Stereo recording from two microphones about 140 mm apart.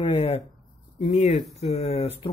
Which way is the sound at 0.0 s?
40° left (ahead or behind).